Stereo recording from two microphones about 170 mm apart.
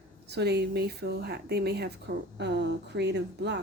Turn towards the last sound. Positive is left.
turn(degrees=-85)